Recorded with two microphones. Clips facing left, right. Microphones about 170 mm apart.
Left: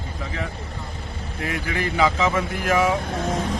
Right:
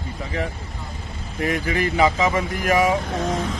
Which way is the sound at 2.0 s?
10° right (ahead or behind).